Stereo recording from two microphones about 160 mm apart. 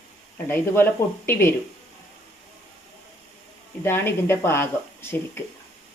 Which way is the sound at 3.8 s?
15° left (ahead or behind).